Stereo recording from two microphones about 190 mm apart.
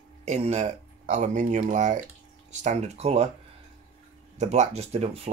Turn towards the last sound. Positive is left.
turn(degrees=-35)  # may be behind; listen again after turning